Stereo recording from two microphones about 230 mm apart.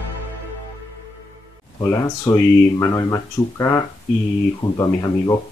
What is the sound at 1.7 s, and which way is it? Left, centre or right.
Speech, centre.